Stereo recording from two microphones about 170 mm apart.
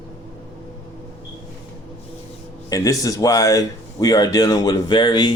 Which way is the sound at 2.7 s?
20° left (ahead or behind).